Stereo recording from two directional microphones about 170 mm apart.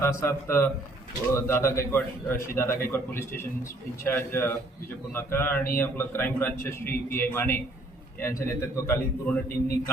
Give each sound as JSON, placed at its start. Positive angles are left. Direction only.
{"t": 0.0, "sound": "a man's voice", "side_deg": 15}